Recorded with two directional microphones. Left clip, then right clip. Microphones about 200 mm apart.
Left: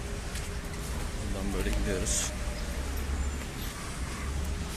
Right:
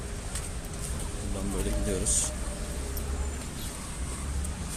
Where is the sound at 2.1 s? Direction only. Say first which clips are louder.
Right 1 dB; 15° right (ahead or behind).